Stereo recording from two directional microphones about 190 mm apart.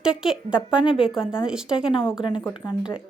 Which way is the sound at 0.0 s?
5° right (ahead or behind).